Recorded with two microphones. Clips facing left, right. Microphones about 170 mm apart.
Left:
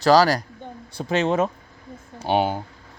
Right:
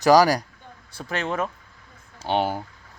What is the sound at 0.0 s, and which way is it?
Speech, 15° right (ahead or behind).